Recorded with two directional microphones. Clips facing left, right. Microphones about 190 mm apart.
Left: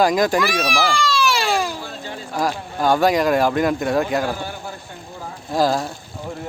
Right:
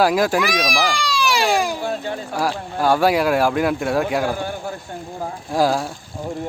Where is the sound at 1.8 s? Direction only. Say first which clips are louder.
Right 8 dB; 55° right (ahead or behind).